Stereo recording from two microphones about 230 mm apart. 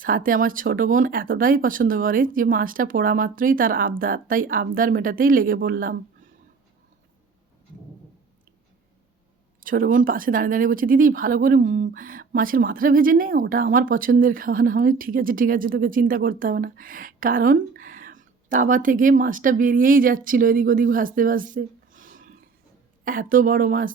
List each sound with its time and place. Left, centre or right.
0.0 s speech: right
9.6 s speech: right